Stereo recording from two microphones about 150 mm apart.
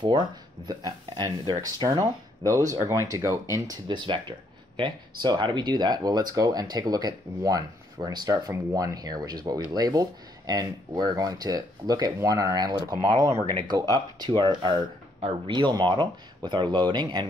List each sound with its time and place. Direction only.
0.0 s speech: 30° right (ahead or behind)